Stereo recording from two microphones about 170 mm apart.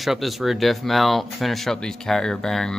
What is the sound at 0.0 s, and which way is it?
Speech, centre (ahead or behind).